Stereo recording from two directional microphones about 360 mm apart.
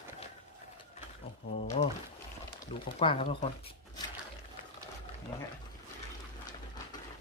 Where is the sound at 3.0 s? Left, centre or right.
Centre.